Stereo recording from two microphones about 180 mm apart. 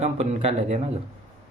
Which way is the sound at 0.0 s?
40° right (ahead or behind).